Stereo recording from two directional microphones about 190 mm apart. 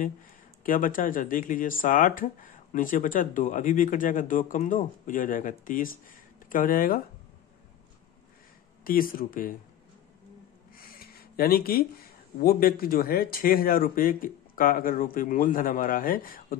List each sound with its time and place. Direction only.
0.7 s speech: 45° left (ahead or behind)
8.8 s speech: 50° left (ahead or behind)
10.8 s a sound: 50° left (ahead or behind)
12.4 s speech: 55° left (ahead or behind)